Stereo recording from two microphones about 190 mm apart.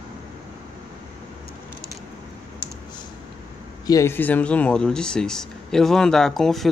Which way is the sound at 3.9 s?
15° left (ahead or behind).